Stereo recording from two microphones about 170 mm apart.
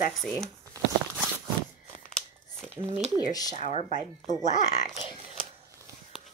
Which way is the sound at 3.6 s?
45° left (ahead or behind).